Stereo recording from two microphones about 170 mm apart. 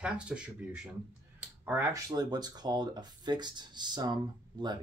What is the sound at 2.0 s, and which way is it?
Speech, 25° right (ahead or behind).